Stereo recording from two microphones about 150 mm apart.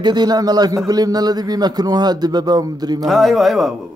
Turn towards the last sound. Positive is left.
turn(degrees=0)  # may be behind; listen again after turning